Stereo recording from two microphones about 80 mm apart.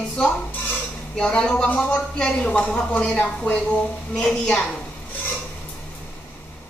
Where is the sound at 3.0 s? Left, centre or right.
Centre.